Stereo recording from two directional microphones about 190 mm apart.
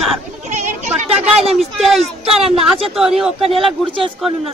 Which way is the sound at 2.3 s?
30° right (ahead or behind).